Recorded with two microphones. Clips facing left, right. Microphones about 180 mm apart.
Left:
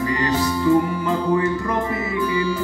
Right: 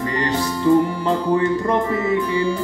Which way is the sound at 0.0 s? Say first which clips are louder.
Left 1 dB; 30° right (ahead or behind).